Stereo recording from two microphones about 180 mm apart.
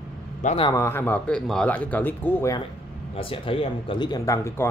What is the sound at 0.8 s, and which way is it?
Speech, 10° left (ahead or behind).